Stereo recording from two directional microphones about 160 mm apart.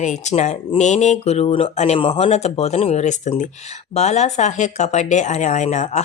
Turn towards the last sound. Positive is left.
turn(degrees=50)  # may be behind; listen again after turning